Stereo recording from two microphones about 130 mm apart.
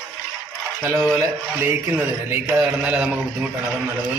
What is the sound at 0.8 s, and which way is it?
A man's voice, 15° right (ahead or behind).